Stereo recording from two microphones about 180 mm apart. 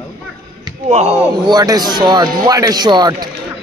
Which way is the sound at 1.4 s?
20° right (ahead or behind).